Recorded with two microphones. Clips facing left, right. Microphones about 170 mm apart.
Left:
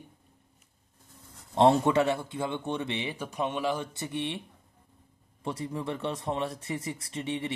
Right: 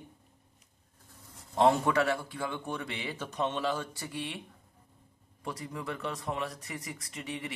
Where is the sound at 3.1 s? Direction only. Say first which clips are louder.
Left 1 dB; 10° left (ahead or behind).